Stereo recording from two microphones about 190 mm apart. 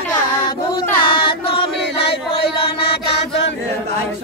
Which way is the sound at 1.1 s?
30° left (ahead or behind).